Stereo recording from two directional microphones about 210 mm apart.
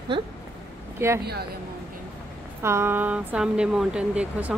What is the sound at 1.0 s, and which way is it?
Speech, 10° right (ahead or behind).